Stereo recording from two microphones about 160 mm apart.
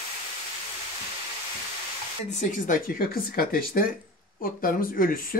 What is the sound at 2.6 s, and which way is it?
Speech, 60° left (ahead or behind).